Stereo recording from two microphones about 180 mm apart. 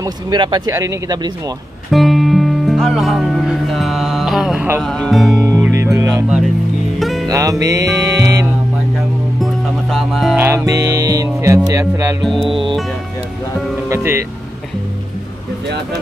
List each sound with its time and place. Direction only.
0.0 s speech: 25° right (ahead or behind)
1.9 s music: centre (ahead or behind)
5.4 s music: 15° right (ahead or behind)
7.0 s music: centre (ahead or behind)
7.2 s music: 20° right (ahead or behind)
9.4 s music: centre (ahead or behind)
10.3 s music: 15° right (ahead or behind)
12.2 s music: centre (ahead or behind)
12.4 s speech: 30° right (ahead or behind)
13.8 s music: 15° right (ahead or behind)